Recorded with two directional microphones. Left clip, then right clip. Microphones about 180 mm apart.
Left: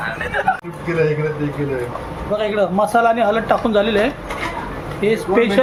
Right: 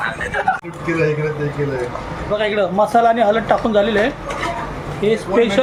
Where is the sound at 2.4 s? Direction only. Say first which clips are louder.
Right 1 dB; 10° left (ahead or behind).